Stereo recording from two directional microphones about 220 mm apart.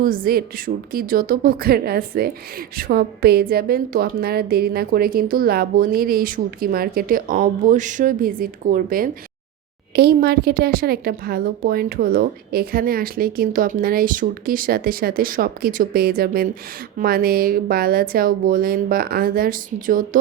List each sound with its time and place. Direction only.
0.0 s a woman's voice: 40° right (ahead or behind)